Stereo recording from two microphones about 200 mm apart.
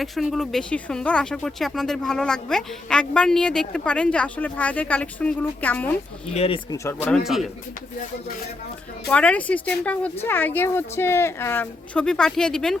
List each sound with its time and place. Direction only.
0.0 s speech: centre (ahead or behind)
6.3 s speech: 30° left (ahead or behind)
6.7 s a woman's voice: 10° left (ahead or behind)
7.3 s speech: centre (ahead or behind)
9.0 s a woman's voice: 5° left (ahead or behind)